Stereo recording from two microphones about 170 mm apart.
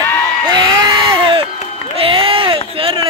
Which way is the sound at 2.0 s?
30° right (ahead or behind).